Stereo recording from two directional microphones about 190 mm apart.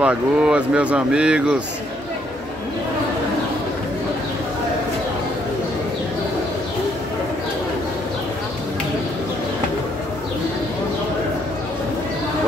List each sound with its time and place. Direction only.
0.0 s speech: 5° right (ahead or behind)